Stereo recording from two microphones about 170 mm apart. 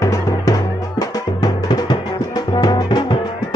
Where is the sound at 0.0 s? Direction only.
20° left (ahead or behind).